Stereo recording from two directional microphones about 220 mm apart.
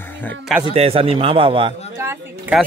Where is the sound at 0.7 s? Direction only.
25° right (ahead or behind).